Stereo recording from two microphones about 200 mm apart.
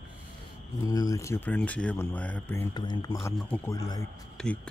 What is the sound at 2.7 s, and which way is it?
Speech, 20° left (ahead or behind).